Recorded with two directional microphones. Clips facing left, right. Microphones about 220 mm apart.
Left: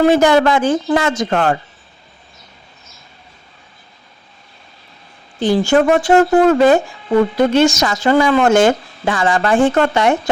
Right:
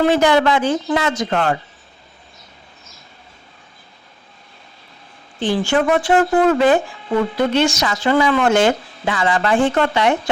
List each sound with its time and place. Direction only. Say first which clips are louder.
0.0 s a woman's voice: left 3 dB; 45° left (ahead or behind)
5.4 s a woman's voice: left 5 dB; 40° left (ahead or behind)